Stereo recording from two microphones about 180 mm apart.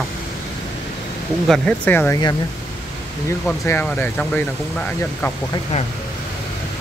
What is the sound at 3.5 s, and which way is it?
Speech, 10° left (ahead or behind).